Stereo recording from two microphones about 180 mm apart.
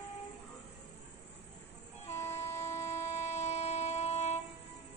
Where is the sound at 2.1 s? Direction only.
15° left (ahead or behind).